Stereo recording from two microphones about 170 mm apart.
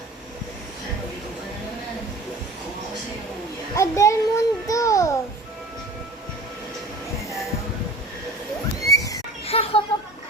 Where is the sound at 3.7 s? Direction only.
15° left (ahead or behind).